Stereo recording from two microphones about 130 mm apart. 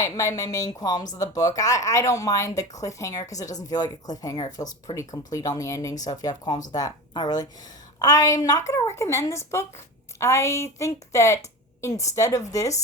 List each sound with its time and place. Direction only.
0.0 s a woman's voice: 25° left (ahead or behind)